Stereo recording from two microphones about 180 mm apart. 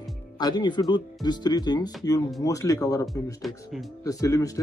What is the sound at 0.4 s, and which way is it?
Speech, 25° left (ahead or behind).